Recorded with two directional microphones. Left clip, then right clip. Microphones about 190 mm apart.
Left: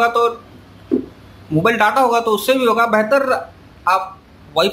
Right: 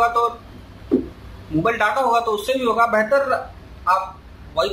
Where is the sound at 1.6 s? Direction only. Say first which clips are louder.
Left 5 dB; 35° left (ahead or behind).